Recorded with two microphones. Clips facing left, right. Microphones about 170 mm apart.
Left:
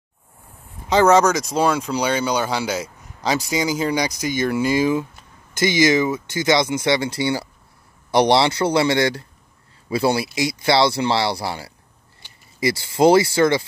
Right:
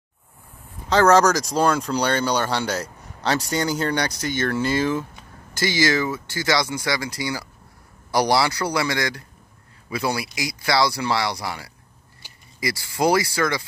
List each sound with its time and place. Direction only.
0.8 s speech: 10° left (ahead or behind); by 13.7 s 25° left (ahead or behind)